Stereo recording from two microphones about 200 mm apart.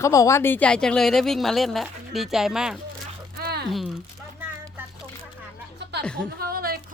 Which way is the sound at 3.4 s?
55° right (ahead or behind).